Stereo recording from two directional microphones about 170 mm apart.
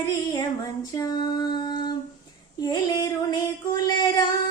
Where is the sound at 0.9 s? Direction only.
20° left (ahead or behind).